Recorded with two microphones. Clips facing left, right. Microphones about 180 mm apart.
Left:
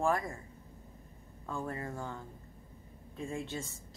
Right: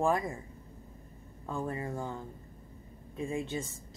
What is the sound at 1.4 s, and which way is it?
Speech, 15° right (ahead or behind).